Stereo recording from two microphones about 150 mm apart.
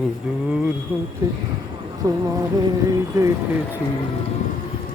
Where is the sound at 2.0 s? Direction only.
20° right (ahead or behind).